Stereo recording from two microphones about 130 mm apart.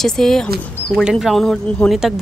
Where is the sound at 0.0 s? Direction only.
5° left (ahead or behind).